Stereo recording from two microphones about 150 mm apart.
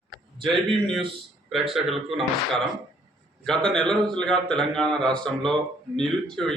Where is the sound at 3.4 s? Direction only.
5° left (ahead or behind).